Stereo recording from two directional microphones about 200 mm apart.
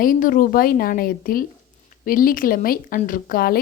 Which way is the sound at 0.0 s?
45° left (ahead or behind).